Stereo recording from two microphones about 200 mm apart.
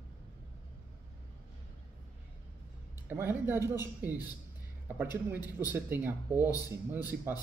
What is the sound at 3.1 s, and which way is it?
A man's voice, 10° right (ahead or behind).